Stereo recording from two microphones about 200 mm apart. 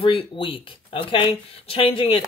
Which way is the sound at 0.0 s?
25° left (ahead or behind).